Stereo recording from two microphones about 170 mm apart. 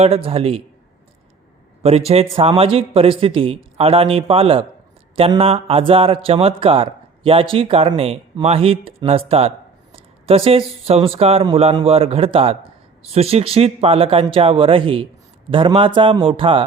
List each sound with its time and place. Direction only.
0.0 s speech: 35° right (ahead or behind)
2.0 s speech: 35° right (ahead or behind)